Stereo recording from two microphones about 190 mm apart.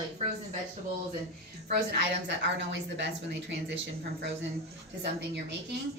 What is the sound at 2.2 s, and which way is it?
Speech, 70° right (ahead or behind).